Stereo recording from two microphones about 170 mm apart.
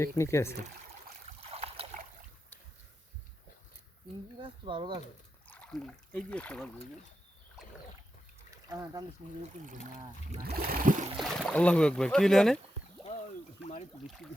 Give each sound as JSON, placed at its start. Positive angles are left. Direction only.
{"t": 0.0, "sound": "speech", "side_deg": 15}
{"t": 1.4, "sound": "boat", "side_deg": -35}
{"t": 4.6, "sound": "speech", "side_deg": -30}
{"t": 5.5, "sound": "speech", "side_deg": 5}
{"t": 8.4, "sound": "a sound", "side_deg": -20}
{"t": 10.4, "sound": "a sound", "side_deg": -65}
{"t": 11.2, "sound": "speech", "side_deg": 0}